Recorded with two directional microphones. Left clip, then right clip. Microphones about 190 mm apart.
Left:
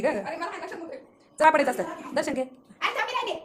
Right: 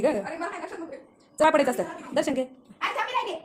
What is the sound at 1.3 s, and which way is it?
A woman's voice, 25° right (ahead or behind).